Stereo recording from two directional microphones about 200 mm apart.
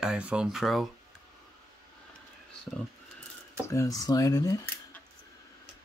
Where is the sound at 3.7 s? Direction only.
15° left (ahead or behind).